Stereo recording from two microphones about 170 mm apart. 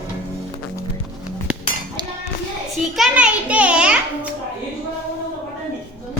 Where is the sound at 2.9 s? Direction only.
5° right (ahead or behind).